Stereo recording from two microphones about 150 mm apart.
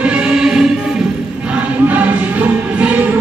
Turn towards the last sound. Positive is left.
turn(degrees=-10)  # may be behind; listen again after turning